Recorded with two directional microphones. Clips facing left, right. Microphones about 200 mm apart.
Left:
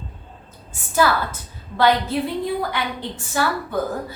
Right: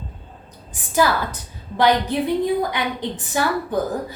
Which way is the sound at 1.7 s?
15° right (ahead or behind).